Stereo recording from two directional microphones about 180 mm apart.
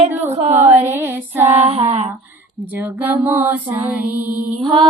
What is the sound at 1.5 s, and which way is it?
Child singing, 35° right (ahead or behind).